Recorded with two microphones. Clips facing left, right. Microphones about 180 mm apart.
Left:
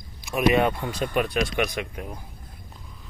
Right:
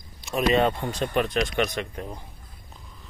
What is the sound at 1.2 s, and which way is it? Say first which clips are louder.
Speech: even; 20° right (ahead or behind).